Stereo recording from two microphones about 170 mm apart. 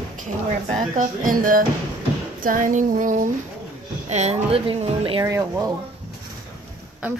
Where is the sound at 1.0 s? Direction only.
55° right (ahead or behind).